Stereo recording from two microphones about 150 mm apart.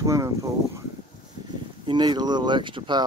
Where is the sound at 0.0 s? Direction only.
20° right (ahead or behind).